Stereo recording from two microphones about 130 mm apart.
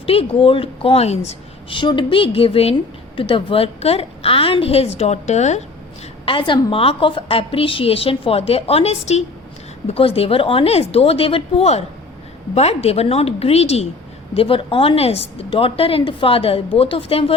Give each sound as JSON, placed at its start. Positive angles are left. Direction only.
{"t": 0.0, "sound": "a woman's voice", "side_deg": 50}
{"t": 1.7, "sound": "a woman's voice", "side_deg": 35}
{"t": 6.2, "sound": "a woman's voice", "side_deg": 40}